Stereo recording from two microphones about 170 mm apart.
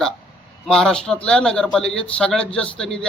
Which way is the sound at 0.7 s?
5° left (ahead or behind).